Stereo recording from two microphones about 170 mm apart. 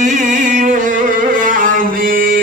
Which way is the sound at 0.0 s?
45° right (ahead or behind).